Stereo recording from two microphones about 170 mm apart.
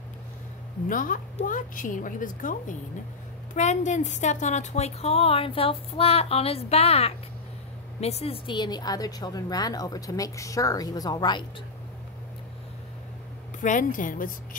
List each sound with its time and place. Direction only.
0.8 s a woman's voice: 50° left (ahead or behind)
3.5 s a woman's voice: 45° left (ahead or behind); by 11.4 s 25° left (ahead or behind)
13.6 s a woman's voice: 50° left (ahead or behind)